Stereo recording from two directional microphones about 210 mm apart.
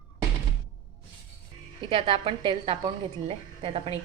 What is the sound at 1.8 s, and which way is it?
A woman's voice, 25° right (ahead or behind).